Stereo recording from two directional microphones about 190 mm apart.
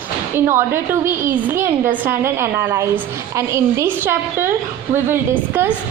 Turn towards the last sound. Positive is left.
turn(degrees=-10)  # may be behind; listen again after turning